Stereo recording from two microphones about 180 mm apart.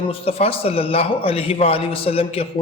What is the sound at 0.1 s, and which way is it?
A man's voice, 35° left (ahead or behind).